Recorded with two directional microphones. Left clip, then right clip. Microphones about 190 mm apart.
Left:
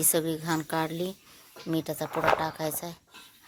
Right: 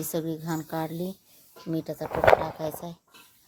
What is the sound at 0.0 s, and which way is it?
Speech, 5° right (ahead or behind).